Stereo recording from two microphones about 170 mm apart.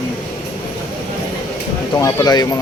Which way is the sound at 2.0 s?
20° left (ahead or behind).